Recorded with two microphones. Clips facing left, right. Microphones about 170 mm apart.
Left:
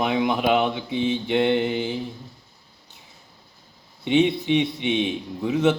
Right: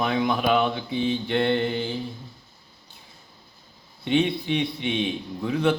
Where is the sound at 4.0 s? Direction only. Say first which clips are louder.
Left 3 dB; 20° left (ahead or behind).